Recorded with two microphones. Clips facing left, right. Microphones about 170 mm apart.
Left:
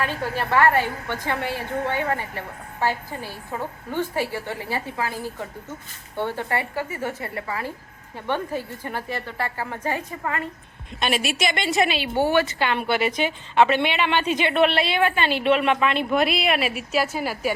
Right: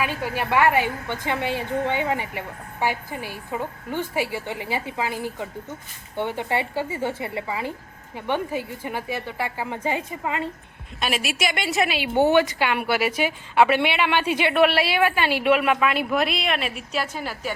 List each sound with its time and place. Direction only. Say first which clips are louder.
0.0 s a woman's voice: even; 10° right (ahead or behind)
11.0 s a woman's voice: left 2 dB; 5° right (ahead or behind)